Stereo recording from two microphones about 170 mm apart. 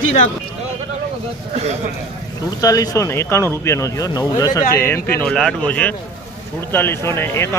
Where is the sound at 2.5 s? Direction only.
20° left (ahead or behind).